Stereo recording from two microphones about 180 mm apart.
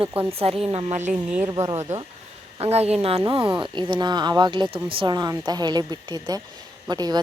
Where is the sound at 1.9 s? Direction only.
40° right (ahead or behind); by 7.2 s 20° right (ahead or behind).